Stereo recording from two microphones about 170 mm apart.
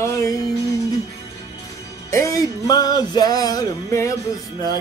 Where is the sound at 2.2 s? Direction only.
25° left (ahead or behind).